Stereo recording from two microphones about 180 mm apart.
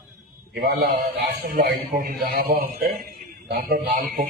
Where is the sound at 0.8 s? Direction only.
60° right (ahead or behind).